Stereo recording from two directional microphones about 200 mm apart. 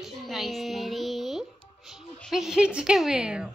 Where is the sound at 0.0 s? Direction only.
Centre (ahead or behind).